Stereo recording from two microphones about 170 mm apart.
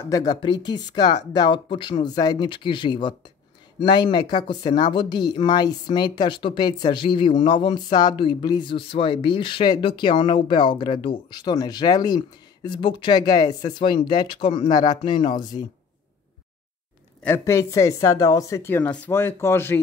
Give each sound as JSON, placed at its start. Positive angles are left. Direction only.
{"t": 0.0, "sound": "speech", "side_deg": 20}
{"t": 17.2, "sound": "a woman's voice", "side_deg": 15}